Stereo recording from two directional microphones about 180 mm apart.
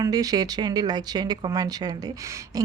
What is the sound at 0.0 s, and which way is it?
Speech, 20° right (ahead or behind).